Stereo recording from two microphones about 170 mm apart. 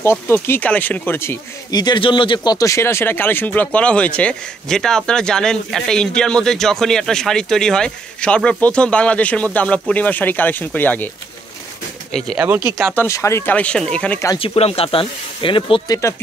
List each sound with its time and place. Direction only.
0.0 s speech: 15° left (ahead or behind)
12.1 s speech: 5° left (ahead or behind)
12.8 s speech: 15° left (ahead or behind)
14.4 s speech: 35° left (ahead or behind)